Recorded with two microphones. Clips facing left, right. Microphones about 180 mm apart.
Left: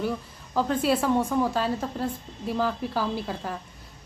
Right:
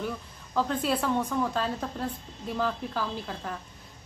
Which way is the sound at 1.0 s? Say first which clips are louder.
Left 4 dB; 25° left (ahead or behind).